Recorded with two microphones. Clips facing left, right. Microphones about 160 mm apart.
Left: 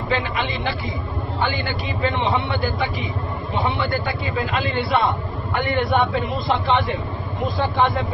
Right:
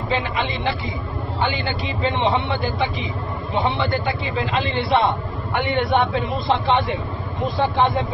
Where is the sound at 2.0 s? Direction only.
20° right (ahead or behind).